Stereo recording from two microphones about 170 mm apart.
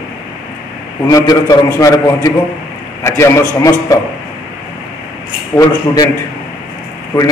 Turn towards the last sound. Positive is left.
turn(degrees=20)  # may be behind; listen again after turning